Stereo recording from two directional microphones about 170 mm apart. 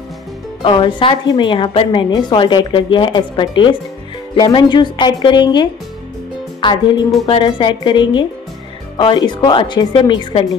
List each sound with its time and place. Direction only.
0.6 s a woman's voice: 30° left (ahead or behind)